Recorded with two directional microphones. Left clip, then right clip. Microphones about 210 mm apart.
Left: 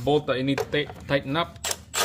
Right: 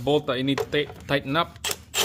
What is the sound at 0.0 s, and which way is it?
Speech, 10° right (ahead or behind).